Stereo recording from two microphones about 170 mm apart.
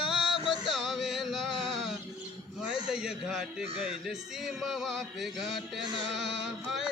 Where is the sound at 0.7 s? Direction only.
Centre (ahead or behind).